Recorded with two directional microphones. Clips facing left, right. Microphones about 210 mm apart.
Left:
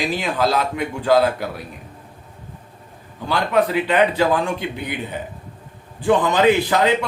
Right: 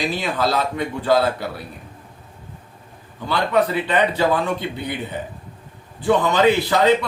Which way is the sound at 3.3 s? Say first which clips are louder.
Even; 15° left (ahead or behind).